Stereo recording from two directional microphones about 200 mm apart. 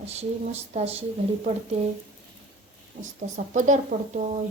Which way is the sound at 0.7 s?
30° right (ahead or behind).